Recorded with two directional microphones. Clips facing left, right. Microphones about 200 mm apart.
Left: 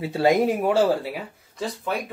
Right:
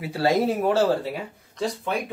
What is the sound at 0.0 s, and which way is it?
Speech, 20° left (ahead or behind).